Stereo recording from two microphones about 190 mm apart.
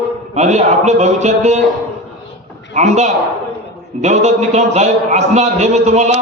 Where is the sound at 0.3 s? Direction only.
35° right (ahead or behind).